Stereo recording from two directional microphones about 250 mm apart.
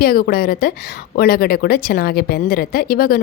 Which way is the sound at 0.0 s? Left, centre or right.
Left.